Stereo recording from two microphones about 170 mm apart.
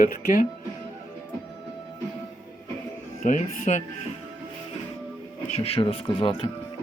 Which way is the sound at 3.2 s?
45° left (ahead or behind).